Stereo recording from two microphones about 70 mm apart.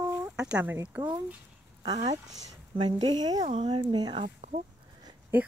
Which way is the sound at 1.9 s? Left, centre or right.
Right.